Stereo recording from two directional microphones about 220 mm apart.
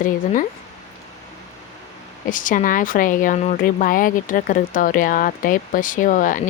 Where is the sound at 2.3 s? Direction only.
35° left (ahead or behind).